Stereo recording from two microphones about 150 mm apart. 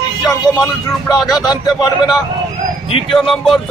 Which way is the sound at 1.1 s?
Centre (ahead or behind).